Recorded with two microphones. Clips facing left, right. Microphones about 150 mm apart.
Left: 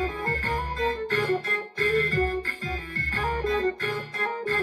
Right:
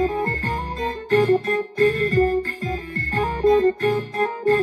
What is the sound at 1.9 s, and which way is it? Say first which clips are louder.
Music: right 3 dB; 30° right (ahead or behind).